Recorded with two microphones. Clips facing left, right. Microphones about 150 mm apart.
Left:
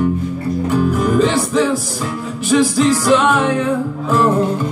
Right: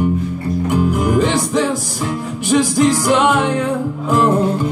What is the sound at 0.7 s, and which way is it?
Music, 15° right (ahead or behind).